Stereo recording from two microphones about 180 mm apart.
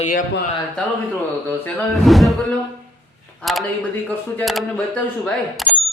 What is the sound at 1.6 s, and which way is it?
Speech, centre (ahead or behind).